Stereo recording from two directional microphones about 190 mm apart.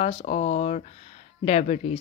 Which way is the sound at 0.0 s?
30° left (ahead or behind).